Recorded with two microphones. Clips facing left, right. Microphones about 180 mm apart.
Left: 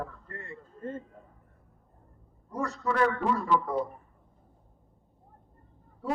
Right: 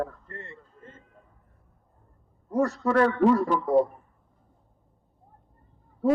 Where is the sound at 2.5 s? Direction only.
40° right (ahead or behind).